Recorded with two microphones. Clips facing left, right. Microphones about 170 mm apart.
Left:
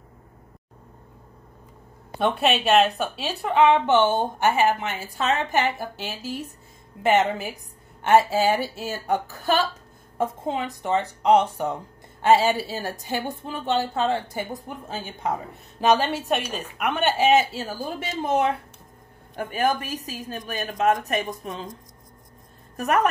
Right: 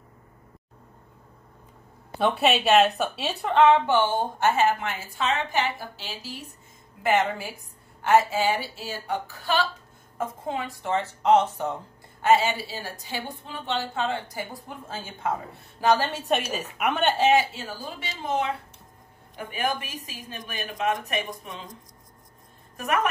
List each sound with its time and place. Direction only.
2.1 s speech: centre (ahead or behind)
3.5 s speech: 15° left (ahead or behind)
5.1 s a woman's voice: 45° left (ahead or behind)
7.0 s a woman's voice: 25° left (ahead or behind)
8.1 s a woman's voice: 40° left (ahead or behind)
10.1 s speech: 20° left (ahead or behind)
12.2 s speech: 35° left (ahead or behind)
14.3 s a woman's voice: 20° left (ahead or behind)
16.3 s speech: centre (ahead or behind)
17.2 s a woman's voice: 20° left (ahead or behind)
17.8 s a woman's voice: 45° left (ahead or behind)